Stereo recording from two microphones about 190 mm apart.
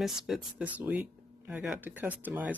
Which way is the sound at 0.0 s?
5° right (ahead or behind).